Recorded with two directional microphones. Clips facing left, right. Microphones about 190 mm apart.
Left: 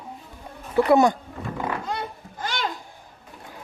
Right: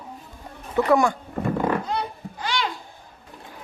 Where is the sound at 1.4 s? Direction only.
60° right (ahead or behind).